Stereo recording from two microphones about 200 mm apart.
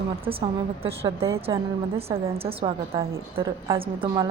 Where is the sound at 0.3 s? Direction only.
30° right (ahead or behind).